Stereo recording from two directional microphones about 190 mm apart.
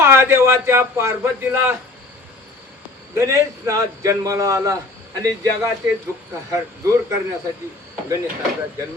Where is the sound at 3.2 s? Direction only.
15° right (ahead or behind).